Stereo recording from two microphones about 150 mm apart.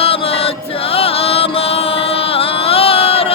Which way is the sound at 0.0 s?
40° left (ahead or behind).